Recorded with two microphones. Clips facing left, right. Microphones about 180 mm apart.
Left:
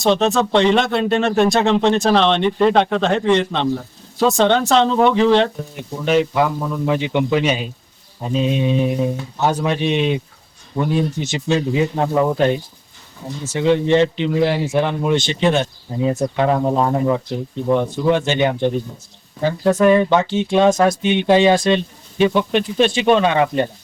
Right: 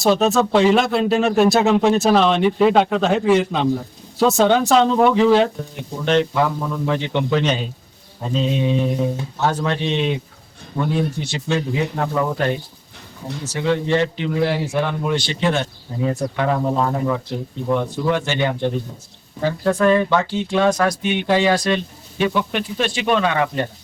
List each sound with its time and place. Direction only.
0.0 s speech: 5° right (ahead or behind)
6.1 s speech: 10° left (ahead or behind)
13.5 s speech: 20° left (ahead or behind)